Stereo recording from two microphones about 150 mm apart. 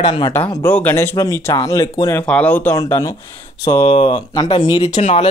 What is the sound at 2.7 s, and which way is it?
Speech, 20° left (ahead or behind).